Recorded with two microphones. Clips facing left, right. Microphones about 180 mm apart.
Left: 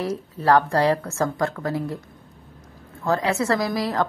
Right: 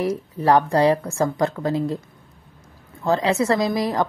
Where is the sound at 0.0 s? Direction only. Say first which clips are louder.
Right 3 dB; 15° right (ahead or behind).